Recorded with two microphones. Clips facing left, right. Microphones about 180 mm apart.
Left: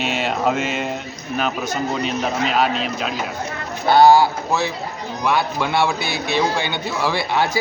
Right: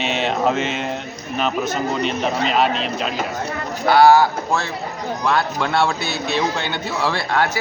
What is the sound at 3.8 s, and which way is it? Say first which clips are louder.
Speech: even; 20° left (ahead or behind).